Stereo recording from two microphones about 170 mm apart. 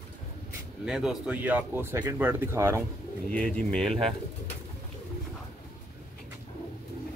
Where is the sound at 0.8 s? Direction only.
5° right (ahead or behind).